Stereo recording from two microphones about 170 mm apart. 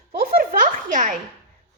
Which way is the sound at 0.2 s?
55° right (ahead or behind).